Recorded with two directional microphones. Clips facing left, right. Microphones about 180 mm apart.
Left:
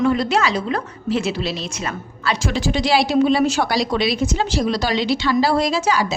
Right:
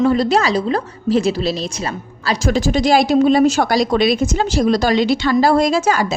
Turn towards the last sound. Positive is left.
turn(degrees=-50)  # may be behind; listen again after turning